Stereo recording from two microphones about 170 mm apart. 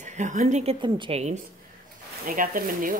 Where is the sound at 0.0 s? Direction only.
45° right (ahead or behind).